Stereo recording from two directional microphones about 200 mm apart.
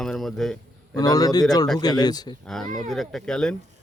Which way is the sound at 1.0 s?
20° left (ahead or behind).